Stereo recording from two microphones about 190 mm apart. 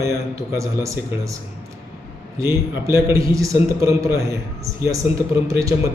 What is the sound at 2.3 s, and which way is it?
A man's voice, 15° right (ahead or behind).